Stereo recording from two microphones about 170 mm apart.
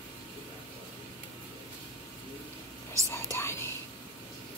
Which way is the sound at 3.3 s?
15° left (ahead or behind).